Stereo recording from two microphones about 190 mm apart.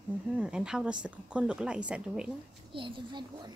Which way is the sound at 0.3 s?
5° right (ahead or behind).